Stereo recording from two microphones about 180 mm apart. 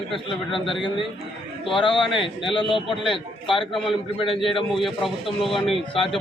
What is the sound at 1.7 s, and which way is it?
Speech, 30° left (ahead or behind).